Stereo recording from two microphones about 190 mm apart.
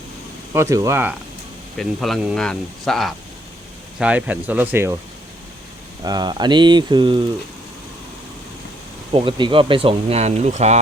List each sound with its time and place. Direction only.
0.5 s speech: 15° right (ahead or behind)
1.7 s speech: centre (ahead or behind)
6.0 s speech: 20° right (ahead or behind)
9.1 s speech: 25° right (ahead or behind)